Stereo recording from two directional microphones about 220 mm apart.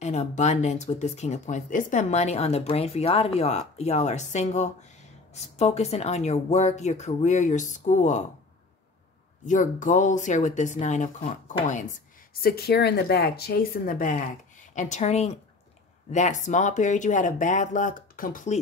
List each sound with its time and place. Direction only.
0.0 s speech: 30° left (ahead or behind)
9.5 s speech: 35° left (ahead or behind)
12.4 s speech: 45° left (ahead or behind)